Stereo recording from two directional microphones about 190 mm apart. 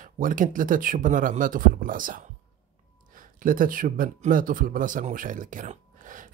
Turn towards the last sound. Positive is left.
turn(degrees=-45)  # may be behind; listen again after turning